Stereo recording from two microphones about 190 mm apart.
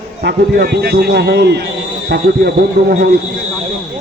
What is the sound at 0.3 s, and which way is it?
A man's voice, 60° right (ahead or behind).